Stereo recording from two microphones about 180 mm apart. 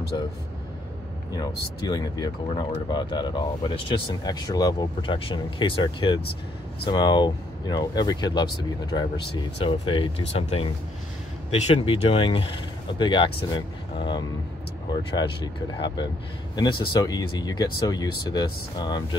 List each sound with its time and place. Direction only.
1.3 s speech: 25° left (ahead or behind)
9.7 s speech: 30° left (ahead or behind)